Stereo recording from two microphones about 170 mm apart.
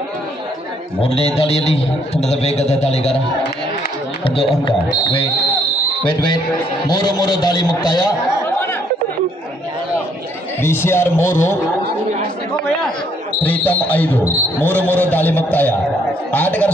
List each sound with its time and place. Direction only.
1.0 s a man's voice: 35° left (ahead or behind)
4.6 s a man's voice: 30° left (ahead or behind)
10.6 s speech: 15° left (ahead or behind)
13.4 s speech: 10° left (ahead or behind)